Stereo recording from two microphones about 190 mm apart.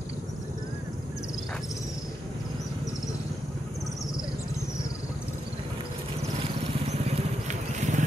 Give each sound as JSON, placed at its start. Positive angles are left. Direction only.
{"t": 6.4, "sound": "vehicle", "side_deg": -35}